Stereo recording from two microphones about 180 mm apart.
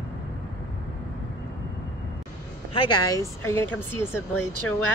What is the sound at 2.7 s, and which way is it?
Speech, 25° left (ahead or behind).